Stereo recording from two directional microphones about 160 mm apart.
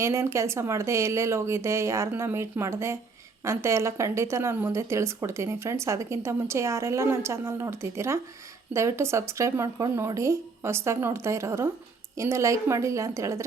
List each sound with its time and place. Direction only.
0.0 s a woman's voice: 20° right (ahead or behind)